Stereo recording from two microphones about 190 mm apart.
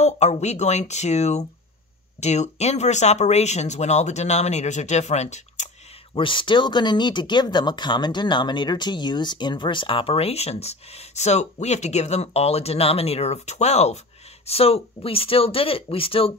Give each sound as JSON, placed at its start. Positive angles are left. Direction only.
{"t": 0.0, "sound": "speech", "side_deg": 35}
{"t": 6.1, "sound": "speech", "side_deg": 25}